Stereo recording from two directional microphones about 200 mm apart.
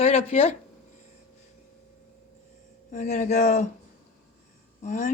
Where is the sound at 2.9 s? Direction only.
35° left (ahead or behind).